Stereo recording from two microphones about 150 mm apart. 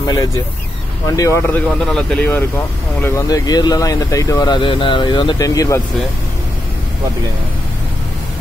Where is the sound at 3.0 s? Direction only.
20° left (ahead or behind).